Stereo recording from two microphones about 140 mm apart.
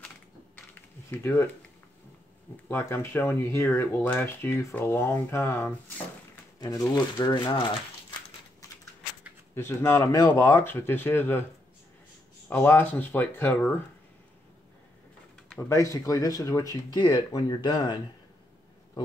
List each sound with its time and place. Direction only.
1.1 s speech: 15° left (ahead or behind)
2.7 s speech: 15° left (ahead or behind)
6.6 s speech: 30° left (ahead or behind)
9.6 s speech: 15° left (ahead or behind)
12.4 s speech: 15° left (ahead or behind)
15.7 s speech: 20° left (ahead or behind)